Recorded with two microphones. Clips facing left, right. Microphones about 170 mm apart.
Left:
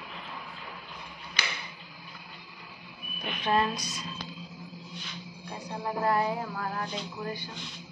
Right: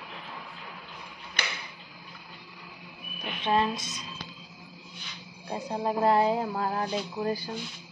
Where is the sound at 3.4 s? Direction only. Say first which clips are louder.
Right 1 dB; 25° right (ahead or behind).